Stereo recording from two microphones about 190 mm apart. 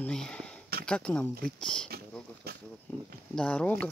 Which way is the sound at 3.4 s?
5° left (ahead or behind).